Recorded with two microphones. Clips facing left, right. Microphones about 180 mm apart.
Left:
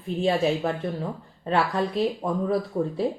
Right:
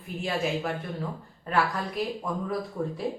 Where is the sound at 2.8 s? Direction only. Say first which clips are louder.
Left 5 dB; 40° left (ahead or behind).